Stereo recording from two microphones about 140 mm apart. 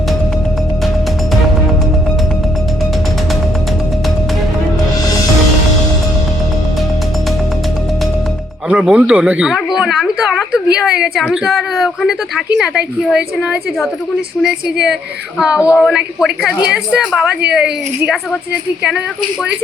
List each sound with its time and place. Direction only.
8.7 s a woman's voice: 5° right (ahead or behind)
15.4 s a woman's voice: 5° right (ahead or behind)